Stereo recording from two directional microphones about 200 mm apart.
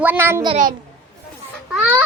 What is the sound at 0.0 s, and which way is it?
Speech, 10° right (ahead or behind).